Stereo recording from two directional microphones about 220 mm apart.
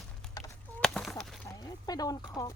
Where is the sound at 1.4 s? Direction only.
15° left (ahead or behind).